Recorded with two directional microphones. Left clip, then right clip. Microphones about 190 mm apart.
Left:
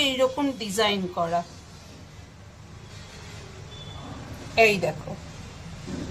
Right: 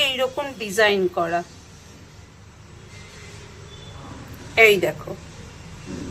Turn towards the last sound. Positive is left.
turn(degrees=-5)  # may be behind; listen again after turning